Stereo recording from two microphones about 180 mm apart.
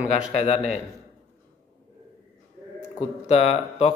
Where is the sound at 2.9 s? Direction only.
35° left (ahead or behind).